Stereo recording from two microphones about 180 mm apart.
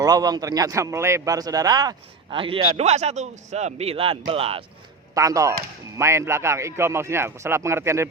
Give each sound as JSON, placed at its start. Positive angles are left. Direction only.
{"t": 0.0, "sound": "speech", "side_deg": -20}
{"t": 5.1, "sound": "a man's voice", "side_deg": -20}